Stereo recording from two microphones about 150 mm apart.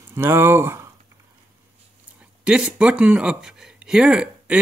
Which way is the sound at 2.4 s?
5° right (ahead or behind).